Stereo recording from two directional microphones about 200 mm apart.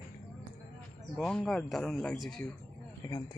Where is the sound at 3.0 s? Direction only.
20° left (ahead or behind).